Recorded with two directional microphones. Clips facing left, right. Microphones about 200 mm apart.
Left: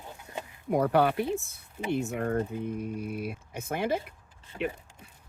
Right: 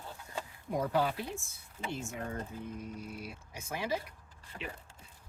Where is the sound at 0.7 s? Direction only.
65° left (ahead or behind).